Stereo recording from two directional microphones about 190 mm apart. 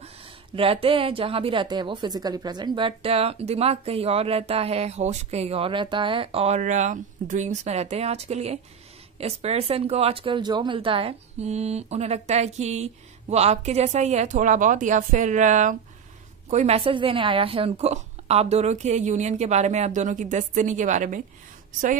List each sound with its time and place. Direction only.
0.6 s a woman's voice: 30° right (ahead or behind)